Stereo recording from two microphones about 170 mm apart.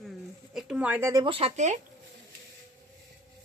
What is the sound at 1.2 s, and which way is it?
Speech, 35° right (ahead or behind).